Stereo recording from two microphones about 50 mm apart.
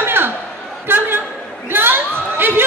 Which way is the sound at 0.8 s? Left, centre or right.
Right.